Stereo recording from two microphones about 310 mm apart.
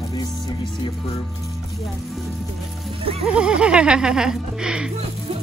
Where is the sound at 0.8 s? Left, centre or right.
Centre.